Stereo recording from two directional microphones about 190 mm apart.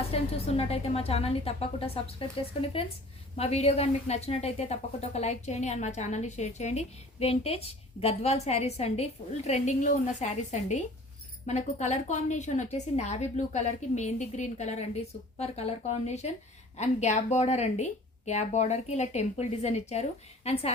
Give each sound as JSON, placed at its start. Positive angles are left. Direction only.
{"t": 0.1, "sound": "a woman's voice", "side_deg": 30}